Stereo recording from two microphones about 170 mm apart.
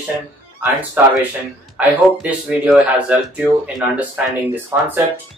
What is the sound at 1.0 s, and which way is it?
Speech, 10° right (ahead or behind).